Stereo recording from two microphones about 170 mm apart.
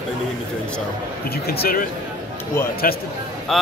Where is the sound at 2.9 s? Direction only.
55° left (ahead or behind).